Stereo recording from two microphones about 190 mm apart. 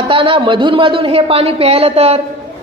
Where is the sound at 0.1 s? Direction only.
25° right (ahead or behind).